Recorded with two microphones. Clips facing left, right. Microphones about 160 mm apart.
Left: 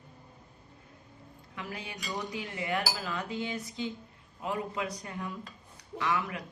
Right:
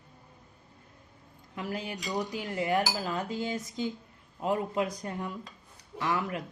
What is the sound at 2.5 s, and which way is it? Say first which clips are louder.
Cutlery: right 5 dB; 45° right (ahead or behind).